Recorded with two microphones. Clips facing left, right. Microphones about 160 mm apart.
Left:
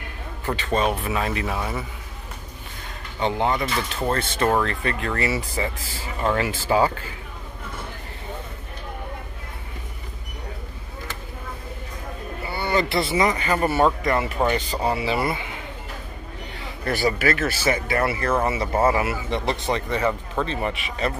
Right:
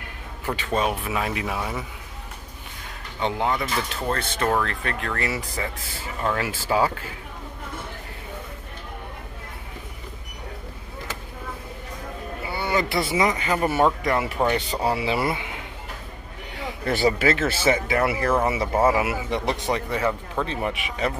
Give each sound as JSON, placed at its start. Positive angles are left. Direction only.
{"t": 0.5, "sound": "speech", "side_deg": -5}
{"t": 3.2, "sound": "speech", "side_deg": 0}
{"t": 12.4, "sound": "speech", "side_deg": -10}
{"t": 14.4, "sound": "speech", "side_deg": 10}
{"t": 14.8, "sound": "speech", "side_deg": -5}
{"t": 16.8, "sound": "speech", "side_deg": -25}
{"t": 20.4, "sound": "speech", "side_deg": -10}